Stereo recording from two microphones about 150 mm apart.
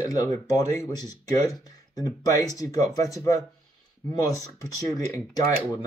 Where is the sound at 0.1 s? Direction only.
25° left (ahead or behind).